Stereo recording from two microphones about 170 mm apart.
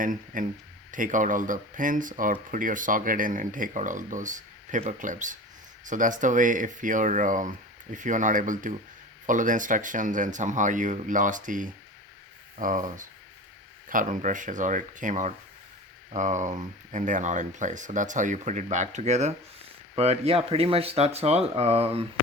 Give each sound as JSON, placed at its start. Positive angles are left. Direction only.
{"t": 0.0, "sound": "speech", "side_deg": -50}